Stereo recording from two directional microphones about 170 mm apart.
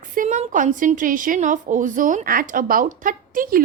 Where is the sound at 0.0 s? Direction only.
50° right (ahead or behind).